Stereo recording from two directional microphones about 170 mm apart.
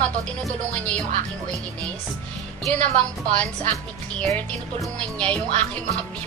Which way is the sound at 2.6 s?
45° right (ahead or behind).